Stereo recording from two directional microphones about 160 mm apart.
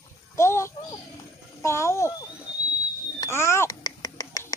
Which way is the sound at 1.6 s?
15° left (ahead or behind).